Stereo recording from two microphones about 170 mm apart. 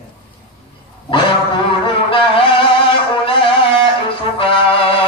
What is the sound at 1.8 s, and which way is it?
Music, 30° left (ahead or behind).